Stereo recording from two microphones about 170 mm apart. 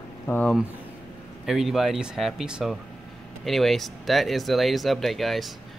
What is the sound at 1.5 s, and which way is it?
Speech, centre (ahead or behind).